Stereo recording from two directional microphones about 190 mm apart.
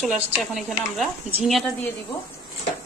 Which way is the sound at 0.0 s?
Centre (ahead or behind).